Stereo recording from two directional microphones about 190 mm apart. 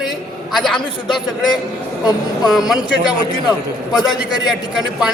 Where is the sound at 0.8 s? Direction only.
25° left (ahead or behind).